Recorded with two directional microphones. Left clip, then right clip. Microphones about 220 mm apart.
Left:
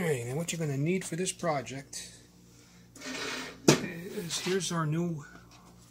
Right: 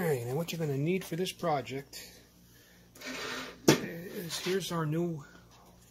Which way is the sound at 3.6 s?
20° right (ahead or behind).